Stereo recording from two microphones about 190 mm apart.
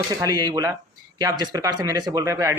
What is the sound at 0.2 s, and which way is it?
Speech, 20° right (ahead or behind).